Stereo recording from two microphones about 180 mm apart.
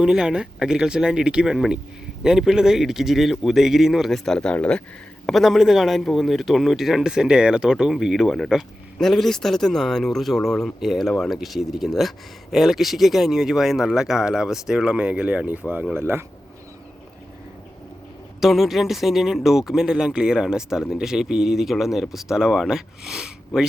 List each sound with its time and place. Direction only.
0.0 s speech: 5° right (ahead or behind)
18.3 s speech: centre (ahead or behind)